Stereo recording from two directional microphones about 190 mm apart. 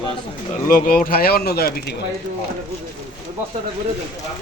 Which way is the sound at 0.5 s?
45° left (ahead or behind).